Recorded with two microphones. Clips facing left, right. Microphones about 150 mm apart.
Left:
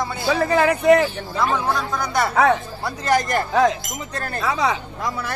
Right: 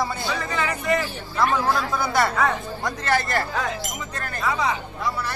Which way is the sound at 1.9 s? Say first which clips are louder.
Even; 5° right (ahead or behind).